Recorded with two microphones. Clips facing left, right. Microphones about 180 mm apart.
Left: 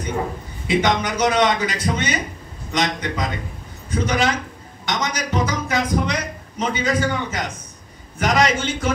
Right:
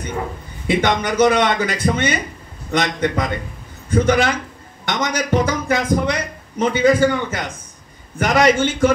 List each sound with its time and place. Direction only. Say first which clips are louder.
0.7 s a man's voice: right 1 dB; 55° right (ahead or behind)